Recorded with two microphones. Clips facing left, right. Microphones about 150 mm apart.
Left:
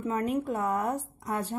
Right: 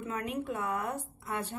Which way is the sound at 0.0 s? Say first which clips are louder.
Left 6 dB; 40° left (ahead or behind).